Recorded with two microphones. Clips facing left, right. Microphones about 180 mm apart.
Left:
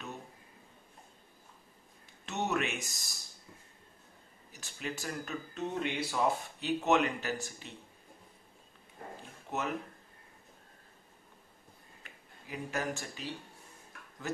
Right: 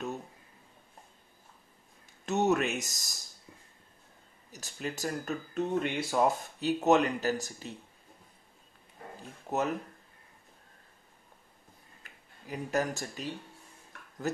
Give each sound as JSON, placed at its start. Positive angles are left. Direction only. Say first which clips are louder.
{"t": 2.2, "sound": "speech", "louder": "right 6 dB", "side_deg": -40}
{"t": 4.5, "sound": "speech", "louder": "right 3 dB", "side_deg": -40}
{"t": 9.5, "sound": "speech", "louder": "right 6 dB", "side_deg": -40}
{"t": 12.0, "sound": "a sound", "louder": "right 2 dB", "side_deg": -40}